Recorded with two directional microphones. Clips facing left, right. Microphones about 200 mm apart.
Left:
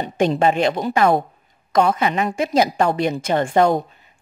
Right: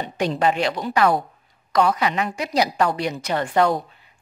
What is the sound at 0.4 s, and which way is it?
A woman's voice, 25° left (ahead or behind).